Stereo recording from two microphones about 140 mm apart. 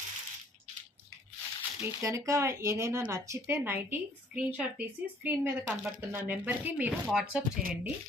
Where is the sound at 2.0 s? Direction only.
25° right (ahead or behind); by 7.4 s 5° right (ahead or behind).